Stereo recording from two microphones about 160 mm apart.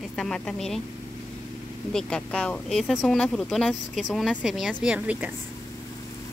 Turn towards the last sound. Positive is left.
turn(degrees=-10)  # may be behind; listen again after turning